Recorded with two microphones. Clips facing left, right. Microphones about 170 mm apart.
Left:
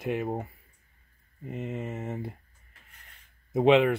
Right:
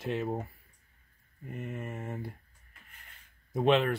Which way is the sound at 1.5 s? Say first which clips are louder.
Left 5 dB; 20° left (ahead or behind).